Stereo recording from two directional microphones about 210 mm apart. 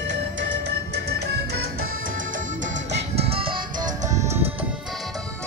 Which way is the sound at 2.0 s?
40° right (ahead or behind).